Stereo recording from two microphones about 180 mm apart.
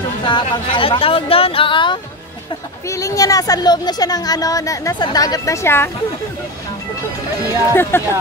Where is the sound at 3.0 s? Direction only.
20° left (ahead or behind).